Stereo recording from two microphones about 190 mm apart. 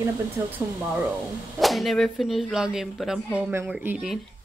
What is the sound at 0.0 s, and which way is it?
Speech, 10° right (ahead or behind).